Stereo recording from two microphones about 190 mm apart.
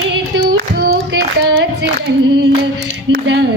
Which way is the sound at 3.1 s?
60° right (ahead or behind).